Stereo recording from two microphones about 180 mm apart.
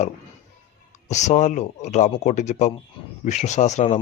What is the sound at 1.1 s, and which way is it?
A man's voice, 40° left (ahead or behind).